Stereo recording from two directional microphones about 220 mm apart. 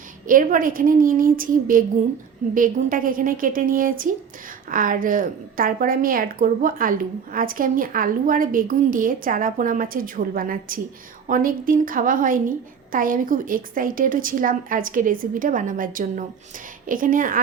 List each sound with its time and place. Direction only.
0.3 s a woman's voice: 40° right (ahead or behind)